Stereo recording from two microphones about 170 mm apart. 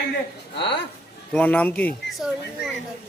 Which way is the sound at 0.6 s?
90° left.